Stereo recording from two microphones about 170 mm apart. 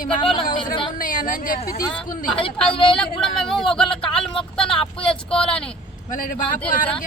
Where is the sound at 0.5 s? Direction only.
30° left (ahead or behind).